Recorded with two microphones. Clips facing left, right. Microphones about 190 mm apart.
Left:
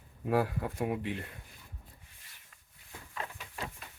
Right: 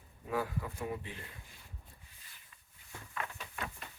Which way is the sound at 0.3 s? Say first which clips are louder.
Left 6 dB; 70° left (ahead or behind).